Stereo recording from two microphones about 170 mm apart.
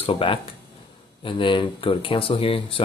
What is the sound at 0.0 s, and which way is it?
Speech, 30° left (ahead or behind).